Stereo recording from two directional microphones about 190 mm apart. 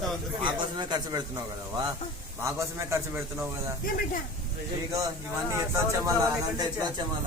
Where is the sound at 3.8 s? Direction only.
50° left (ahead or behind).